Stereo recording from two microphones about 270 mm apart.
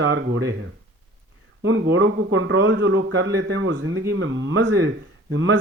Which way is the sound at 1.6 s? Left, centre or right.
Right.